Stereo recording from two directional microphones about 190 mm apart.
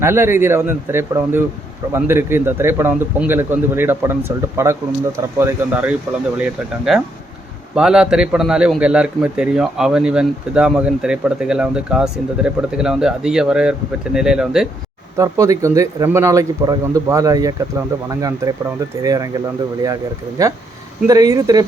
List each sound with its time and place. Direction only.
0.0 s a man's voice: 15° right (ahead or behind)
15.2 s a man's voice: 15° right (ahead or behind)
20.4 s a man's voice: 15° right (ahead or behind)